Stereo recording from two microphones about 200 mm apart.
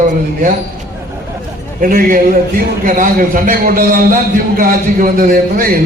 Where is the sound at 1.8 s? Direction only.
45° right (ahead or behind).